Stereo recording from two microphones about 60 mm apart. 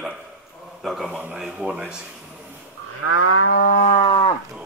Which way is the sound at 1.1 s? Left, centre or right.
Right.